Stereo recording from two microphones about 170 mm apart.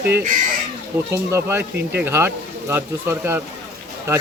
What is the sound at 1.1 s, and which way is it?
Speech, 15° right (ahead or behind).